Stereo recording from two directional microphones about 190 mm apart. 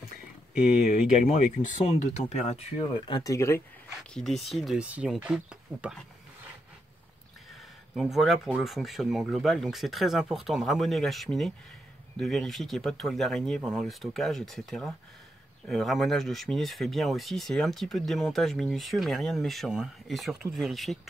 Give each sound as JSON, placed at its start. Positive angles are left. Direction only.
{"t": 0.8, "sound": "speech", "side_deg": 40}
{"t": 4.1, "sound": "speech", "side_deg": 0}
{"t": 7.9, "sound": "speech", "side_deg": 0}